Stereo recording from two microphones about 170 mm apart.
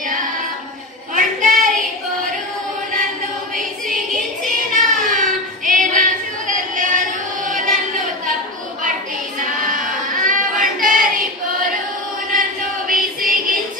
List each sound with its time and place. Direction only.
1.1 s child singing: 50° right (ahead or behind)
4.7 s child singing: 50° right (ahead or behind)
9.4 s choir: 50° right (ahead or behind)
12.3 s chant: 55° right (ahead or behind)